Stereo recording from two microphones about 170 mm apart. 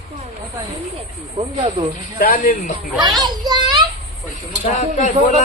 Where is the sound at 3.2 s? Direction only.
25° right (ahead or behind).